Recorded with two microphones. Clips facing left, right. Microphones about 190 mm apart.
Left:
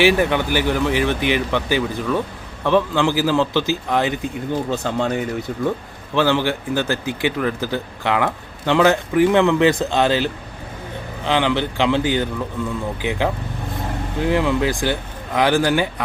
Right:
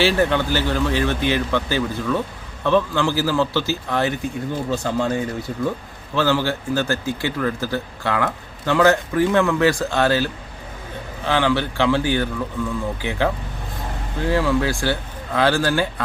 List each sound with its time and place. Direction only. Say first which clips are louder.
0.0 s speech: left 2 dB; 15° left (ahead or behind)